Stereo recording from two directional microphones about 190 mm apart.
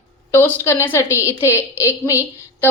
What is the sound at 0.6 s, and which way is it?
A woman's voice, 15° left (ahead or behind).